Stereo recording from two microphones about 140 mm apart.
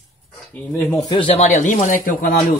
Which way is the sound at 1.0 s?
40° left (ahead or behind).